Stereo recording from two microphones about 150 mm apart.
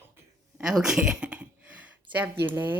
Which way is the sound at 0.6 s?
5° right (ahead or behind).